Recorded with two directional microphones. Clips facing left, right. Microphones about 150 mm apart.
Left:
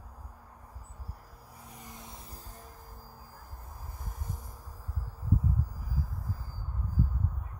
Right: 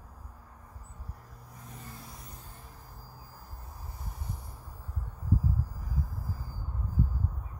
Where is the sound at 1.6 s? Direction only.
15° left (ahead or behind).